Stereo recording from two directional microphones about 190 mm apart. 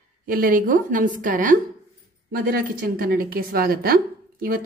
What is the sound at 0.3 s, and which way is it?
A woman's voice, 50° right (ahead or behind).